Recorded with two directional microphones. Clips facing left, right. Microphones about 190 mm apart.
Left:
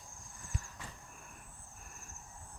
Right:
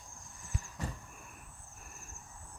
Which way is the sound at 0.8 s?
40° right (ahead or behind).